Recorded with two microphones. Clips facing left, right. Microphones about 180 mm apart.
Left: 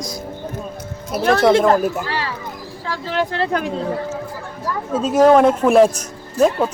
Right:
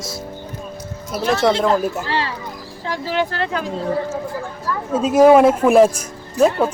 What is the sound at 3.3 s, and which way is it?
Speech, 20° left (ahead or behind).